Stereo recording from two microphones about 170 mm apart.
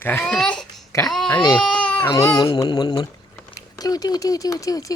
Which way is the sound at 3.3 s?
20° left (ahead or behind).